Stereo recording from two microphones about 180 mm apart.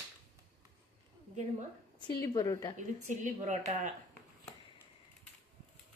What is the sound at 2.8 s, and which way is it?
A woman's voice, 40° right (ahead or behind).